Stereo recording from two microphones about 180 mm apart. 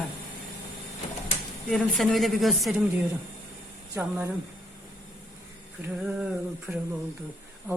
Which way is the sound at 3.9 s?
15° right (ahead or behind).